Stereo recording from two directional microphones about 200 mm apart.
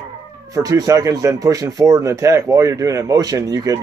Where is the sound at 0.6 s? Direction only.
15° right (ahead or behind).